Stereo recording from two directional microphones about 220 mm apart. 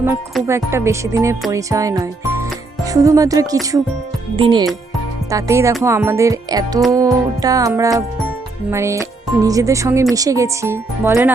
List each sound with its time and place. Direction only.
0.4 s speech: 10° right (ahead or behind)